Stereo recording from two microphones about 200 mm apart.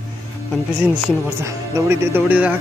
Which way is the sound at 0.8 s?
5° right (ahead or behind).